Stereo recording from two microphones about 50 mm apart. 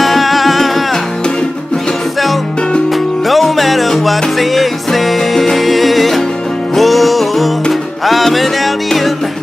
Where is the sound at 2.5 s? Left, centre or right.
Centre.